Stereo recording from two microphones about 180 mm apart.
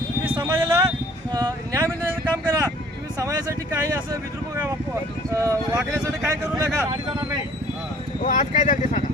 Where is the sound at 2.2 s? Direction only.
10° left (ahead or behind).